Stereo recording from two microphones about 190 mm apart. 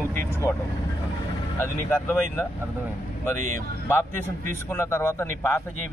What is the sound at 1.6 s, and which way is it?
Speech, 10° left (ahead or behind).